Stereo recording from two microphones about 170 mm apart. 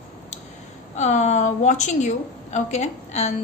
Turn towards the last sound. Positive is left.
turn(degrees=40)  # may be behind; listen again after turning